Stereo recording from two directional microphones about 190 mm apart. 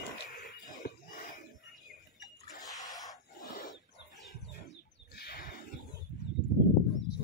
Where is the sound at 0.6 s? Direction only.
45° left (ahead or behind).